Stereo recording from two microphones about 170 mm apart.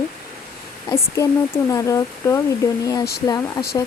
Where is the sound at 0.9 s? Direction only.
20° left (ahead or behind).